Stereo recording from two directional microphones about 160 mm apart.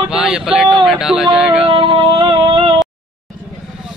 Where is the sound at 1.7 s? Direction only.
35° right (ahead or behind).